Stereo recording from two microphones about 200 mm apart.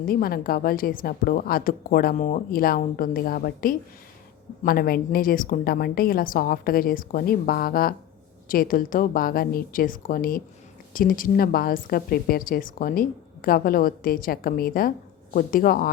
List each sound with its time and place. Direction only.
0.1 s a woman's voice: 50° left (ahead or behind)